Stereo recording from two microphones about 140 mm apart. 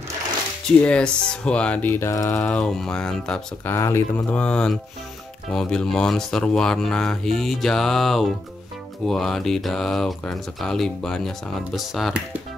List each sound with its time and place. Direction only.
0.8 s speech: 5° left (ahead or behind)
3.7 s speech: 20° left (ahead or behind); by 12.4 s 5° right (ahead or behind)